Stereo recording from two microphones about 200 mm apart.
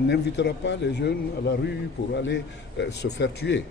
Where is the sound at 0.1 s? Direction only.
60° left (ahead or behind).